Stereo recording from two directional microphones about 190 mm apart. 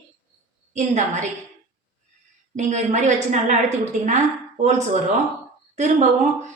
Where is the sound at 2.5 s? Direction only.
40° right (ahead or behind).